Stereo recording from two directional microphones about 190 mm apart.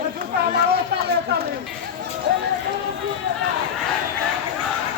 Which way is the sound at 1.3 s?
60° right (ahead or behind).